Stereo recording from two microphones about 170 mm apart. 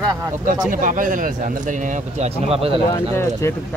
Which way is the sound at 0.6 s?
50° right (ahead or behind).